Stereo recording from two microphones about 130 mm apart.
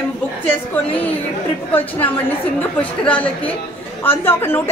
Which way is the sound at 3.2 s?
10° left (ahead or behind).